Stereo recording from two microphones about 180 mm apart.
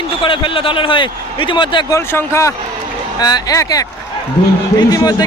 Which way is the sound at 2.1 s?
15° left (ahead or behind).